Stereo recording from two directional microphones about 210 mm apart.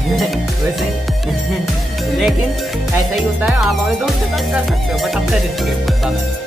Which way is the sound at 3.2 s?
Centre (ahead or behind).